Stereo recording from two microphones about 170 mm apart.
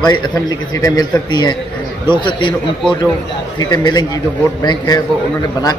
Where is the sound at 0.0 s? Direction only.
25° left (ahead or behind).